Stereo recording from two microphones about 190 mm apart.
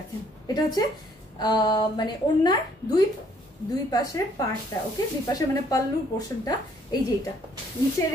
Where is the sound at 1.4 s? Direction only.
20° left (ahead or behind).